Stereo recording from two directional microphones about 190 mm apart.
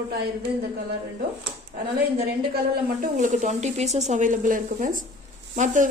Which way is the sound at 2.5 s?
45° right (ahead or behind).